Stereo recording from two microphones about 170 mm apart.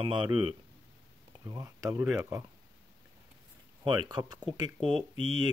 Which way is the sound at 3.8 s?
25° right (ahead or behind).